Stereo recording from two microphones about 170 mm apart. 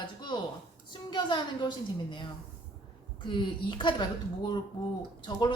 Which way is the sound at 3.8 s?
30° left (ahead or behind).